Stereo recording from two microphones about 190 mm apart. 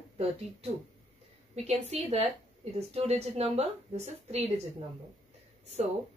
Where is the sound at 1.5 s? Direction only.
35° right (ahead or behind).